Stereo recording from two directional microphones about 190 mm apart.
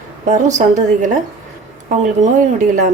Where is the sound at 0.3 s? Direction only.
40° right (ahead or behind).